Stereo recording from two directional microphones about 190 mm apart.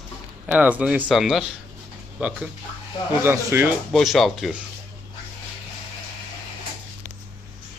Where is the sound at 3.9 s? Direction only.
Centre (ahead or behind).